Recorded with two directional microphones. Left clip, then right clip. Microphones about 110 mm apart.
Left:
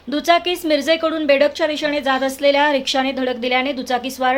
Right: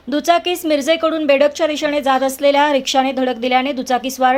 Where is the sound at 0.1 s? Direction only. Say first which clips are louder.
Right 1 dB; 25° right (ahead or behind).